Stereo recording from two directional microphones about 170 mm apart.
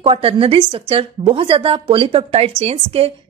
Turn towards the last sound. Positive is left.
turn(degrees=-35)  # may be behind; listen again after turning